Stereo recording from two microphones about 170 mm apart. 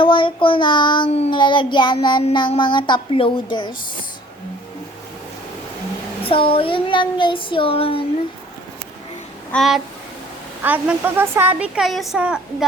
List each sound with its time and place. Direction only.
0.0 s child singing: 30° left (ahead or behind)
6.2 s speech: 30° left (ahead or behind)
9.5 s a sound: centre (ahead or behind)
10.6 s a woman's voice: 10° right (ahead or behind)